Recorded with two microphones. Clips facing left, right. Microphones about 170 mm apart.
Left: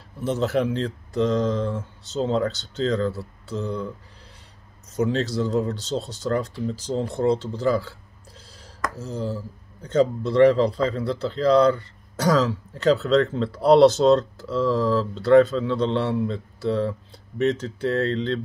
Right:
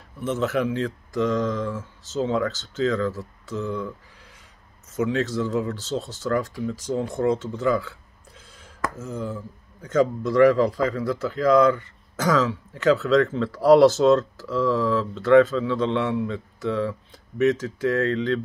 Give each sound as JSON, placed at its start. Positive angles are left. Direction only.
{"t": 0.2, "sound": "speech", "side_deg": 35}
{"t": 4.9, "sound": "speech", "side_deg": 35}
{"t": 8.9, "sound": "speech", "side_deg": 35}